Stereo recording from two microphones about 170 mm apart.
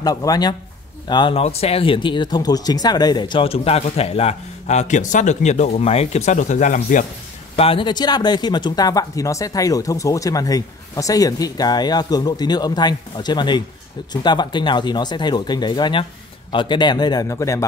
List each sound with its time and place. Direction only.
0.0 s speech: 20° left (ahead or behind); by 7.1 s 50° left (ahead or behind)
7.5 s speech: 35° left (ahead or behind)